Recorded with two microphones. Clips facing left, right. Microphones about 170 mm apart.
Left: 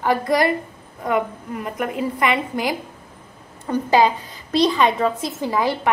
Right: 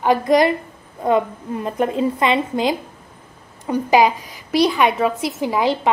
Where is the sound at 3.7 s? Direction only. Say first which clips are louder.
Right 2 dB; 15° right (ahead or behind).